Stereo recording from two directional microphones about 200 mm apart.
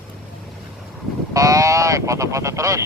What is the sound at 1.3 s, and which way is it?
Honk, 15° right (ahead or behind).